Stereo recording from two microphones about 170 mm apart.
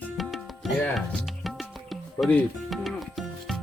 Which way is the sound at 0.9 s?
Centre (ahead or behind).